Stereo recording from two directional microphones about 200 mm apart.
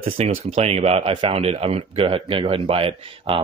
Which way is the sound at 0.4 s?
30° right (ahead or behind).